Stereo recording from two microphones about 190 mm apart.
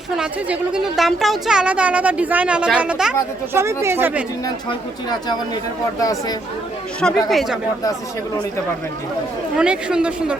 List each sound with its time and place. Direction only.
0.2 s a woman's voice: 5° right (ahead or behind)
6.0 s speech: 15° left (ahead or behind)
7.3 s a woman's voice: centre (ahead or behind)
9.6 s a woman's voice: 5° right (ahead or behind)